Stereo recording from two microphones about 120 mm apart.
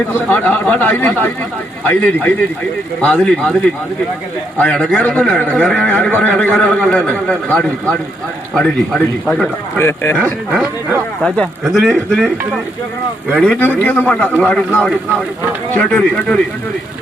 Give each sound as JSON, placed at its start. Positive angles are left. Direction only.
{"t": 0.1, "sound": "speech", "side_deg": 15}
{"t": 4.5, "sound": "speech", "side_deg": 10}
{"t": 8.5, "sound": "a man's voice", "side_deg": 0}
{"t": 9.3, "sound": "speech", "side_deg": 15}
{"t": 10.5, "sound": "speech", "side_deg": -10}
{"t": 11.2, "sound": "a man's voice", "side_deg": 5}
{"t": 13.4, "sound": "a man's voice", "side_deg": 10}